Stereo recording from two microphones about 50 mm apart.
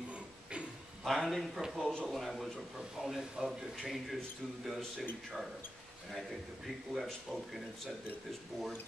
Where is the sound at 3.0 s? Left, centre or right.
Centre.